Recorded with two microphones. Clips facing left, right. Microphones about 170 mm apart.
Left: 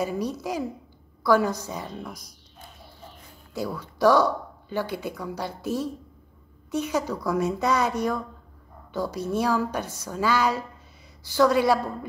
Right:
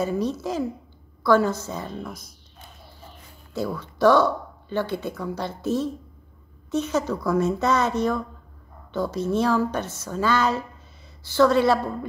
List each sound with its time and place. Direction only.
0.0 s speech: 10° left (ahead or behind)
3.5 s speech: 10° left (ahead or behind)